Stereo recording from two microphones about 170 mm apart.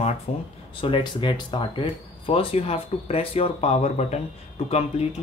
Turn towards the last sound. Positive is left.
turn(degrees=35)  # may be behind; listen again after turning